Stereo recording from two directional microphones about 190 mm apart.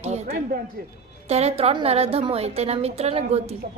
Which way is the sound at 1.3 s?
35° right (ahead or behind).